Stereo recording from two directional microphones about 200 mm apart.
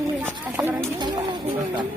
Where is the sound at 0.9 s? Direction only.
20° right (ahead or behind).